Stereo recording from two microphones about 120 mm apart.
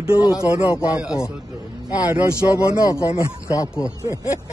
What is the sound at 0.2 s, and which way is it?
Speech, 30° left (ahead or behind).